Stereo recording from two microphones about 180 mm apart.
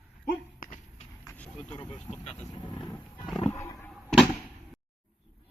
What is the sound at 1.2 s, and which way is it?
Vehicle, 10° left (ahead or behind).